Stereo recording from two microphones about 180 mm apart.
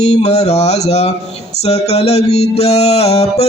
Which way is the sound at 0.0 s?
40° left (ahead or behind).